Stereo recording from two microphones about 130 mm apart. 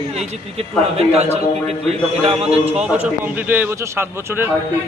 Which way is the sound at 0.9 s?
55° right (ahead or behind).